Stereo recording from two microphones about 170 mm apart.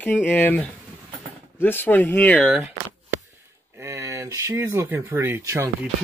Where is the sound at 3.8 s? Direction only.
15° right (ahead or behind).